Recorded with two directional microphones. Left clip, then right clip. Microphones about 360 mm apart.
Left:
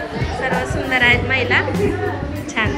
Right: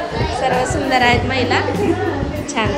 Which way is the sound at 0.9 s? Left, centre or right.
Centre.